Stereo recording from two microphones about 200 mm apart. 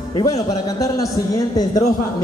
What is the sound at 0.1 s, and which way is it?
A man's voice, 20° left (ahead or behind).